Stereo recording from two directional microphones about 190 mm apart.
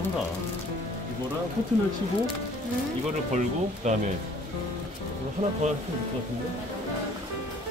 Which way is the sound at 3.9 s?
40° right (ahead or behind).